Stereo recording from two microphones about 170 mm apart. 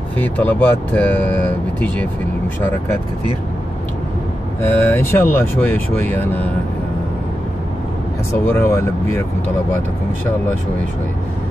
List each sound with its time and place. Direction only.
0.2 s speech: 10° left (ahead or behind)
4.6 s speech: 10° left (ahead or behind)
8.5 s speech: 15° left (ahead or behind)